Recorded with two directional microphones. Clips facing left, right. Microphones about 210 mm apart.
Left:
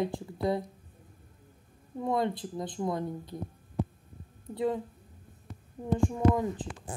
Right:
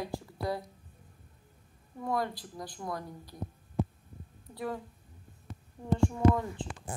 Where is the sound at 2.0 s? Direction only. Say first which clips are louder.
Left 4 dB; 25° left (ahead or behind).